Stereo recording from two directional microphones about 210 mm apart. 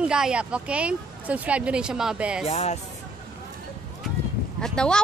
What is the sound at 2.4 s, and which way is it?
Speech, 30° left (ahead or behind).